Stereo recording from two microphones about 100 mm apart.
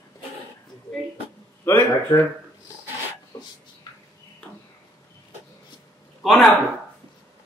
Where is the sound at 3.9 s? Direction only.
40° left (ahead or behind).